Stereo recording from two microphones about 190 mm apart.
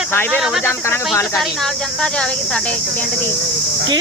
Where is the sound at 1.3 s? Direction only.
5° left (ahead or behind).